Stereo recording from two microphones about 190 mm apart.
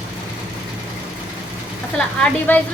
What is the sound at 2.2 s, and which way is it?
Speech, 10° left (ahead or behind).